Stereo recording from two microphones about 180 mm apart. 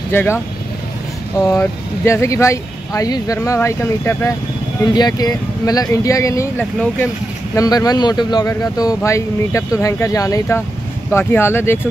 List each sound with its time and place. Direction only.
0.1 s speech: 10° left (ahead or behind)
1.4 s a man's voice: 15° left (ahead or behind)
7.5 s a man's voice: 20° left (ahead or behind)